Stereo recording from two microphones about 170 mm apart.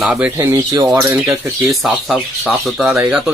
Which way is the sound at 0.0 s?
5° right (ahead or behind).